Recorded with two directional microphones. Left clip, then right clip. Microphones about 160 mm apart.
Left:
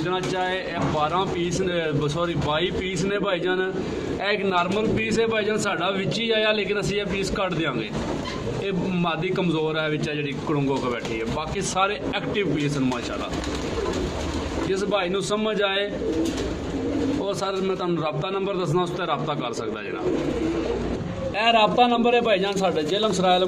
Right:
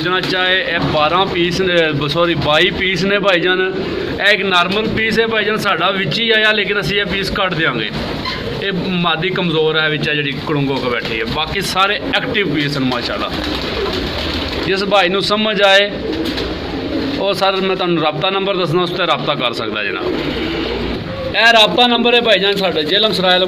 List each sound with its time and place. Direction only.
0.1 s speech: centre (ahead or behind); by 3.6 s 20° right (ahead or behind)
4.2 s a man's voice: 5° left (ahead or behind)
9.0 s a man's voice: 5° left (ahead or behind)
11.7 s a man's voice: centre (ahead or behind)
14.7 s speech: 15° right (ahead or behind)
17.4 s speech: 10° right (ahead or behind)
21.4 s a man's voice: 5° left (ahead or behind)